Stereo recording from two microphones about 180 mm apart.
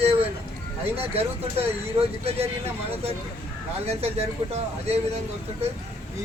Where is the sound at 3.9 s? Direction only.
35° right (ahead or behind).